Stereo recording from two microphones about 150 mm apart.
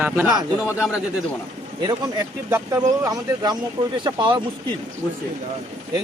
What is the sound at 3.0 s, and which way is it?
Speech, 25° right (ahead or behind).